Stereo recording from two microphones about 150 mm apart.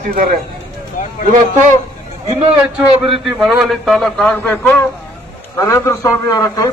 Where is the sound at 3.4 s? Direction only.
Centre (ahead or behind).